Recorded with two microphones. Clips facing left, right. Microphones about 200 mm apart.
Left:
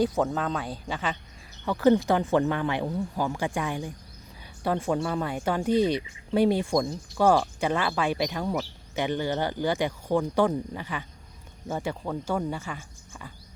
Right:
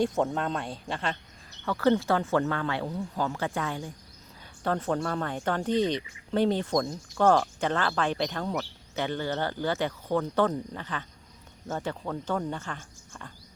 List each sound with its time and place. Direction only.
0.0 s speech: centre (ahead or behind)
1.6 s speech: 15° left (ahead or behind)